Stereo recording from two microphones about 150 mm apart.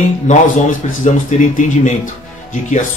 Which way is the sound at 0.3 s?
55° left (ahead or behind).